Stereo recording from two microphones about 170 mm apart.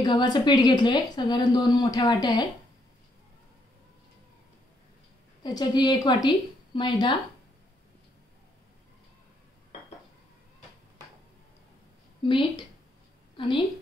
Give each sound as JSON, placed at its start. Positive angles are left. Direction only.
{"t": 0.0, "sound": "speech", "side_deg": 25}
{"t": 5.4, "sound": "speech", "side_deg": 25}
{"t": 12.3, "sound": "a woman's voice", "side_deg": 25}